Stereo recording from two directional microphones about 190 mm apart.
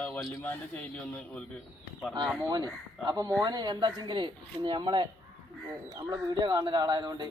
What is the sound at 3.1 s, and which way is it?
Speech, 20° right (ahead or behind).